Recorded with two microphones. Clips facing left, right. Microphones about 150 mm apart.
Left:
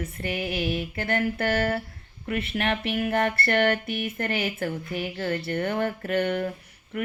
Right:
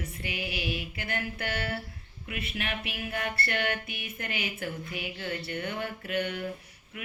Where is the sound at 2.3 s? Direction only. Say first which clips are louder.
Left 9 dB; 60° left (ahead or behind).